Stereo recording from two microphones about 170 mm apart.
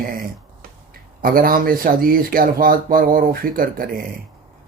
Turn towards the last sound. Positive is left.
turn(degrees=-55)  # may be behind; listen again after turning